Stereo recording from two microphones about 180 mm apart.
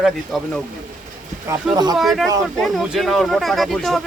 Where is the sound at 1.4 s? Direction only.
20° right (ahead or behind).